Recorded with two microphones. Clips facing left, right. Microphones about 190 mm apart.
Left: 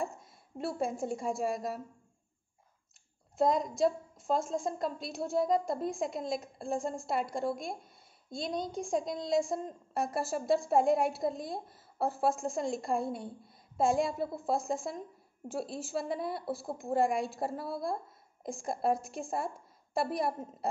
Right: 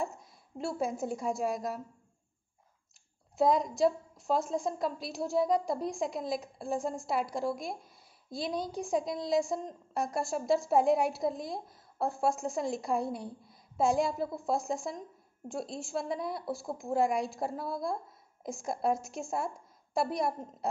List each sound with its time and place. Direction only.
0.0 s a woman's voice: centre (ahead or behind)
3.3 s a woman's voice: centre (ahead or behind)